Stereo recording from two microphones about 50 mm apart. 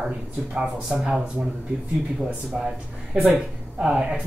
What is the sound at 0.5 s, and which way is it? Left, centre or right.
Speech, centre.